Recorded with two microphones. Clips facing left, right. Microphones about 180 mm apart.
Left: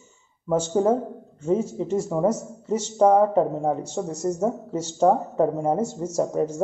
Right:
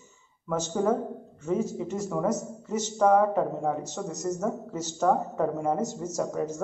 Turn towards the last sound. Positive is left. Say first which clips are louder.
# left 5 dB
turn(degrees=30)  # may be behind; listen again after turning